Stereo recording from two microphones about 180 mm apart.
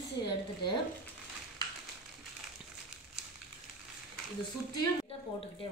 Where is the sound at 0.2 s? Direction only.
25° left (ahead or behind).